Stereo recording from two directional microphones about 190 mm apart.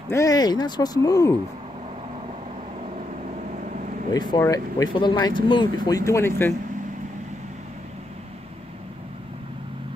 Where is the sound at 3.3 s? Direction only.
40° right (ahead or behind).